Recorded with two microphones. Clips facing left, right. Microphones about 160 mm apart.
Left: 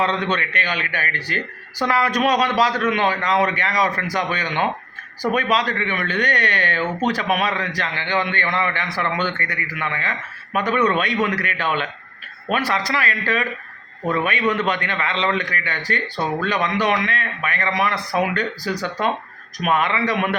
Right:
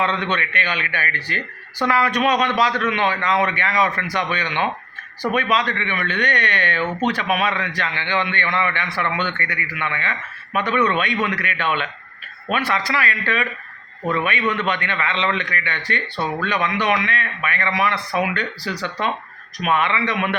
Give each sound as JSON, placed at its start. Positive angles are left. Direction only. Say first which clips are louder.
{"t": 0.0, "sound": "a man's voice", "louder": "left 1 dB", "side_deg": 40}